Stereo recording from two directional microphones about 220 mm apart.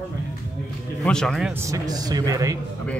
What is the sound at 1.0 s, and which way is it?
Speech, 5° left (ahead or behind).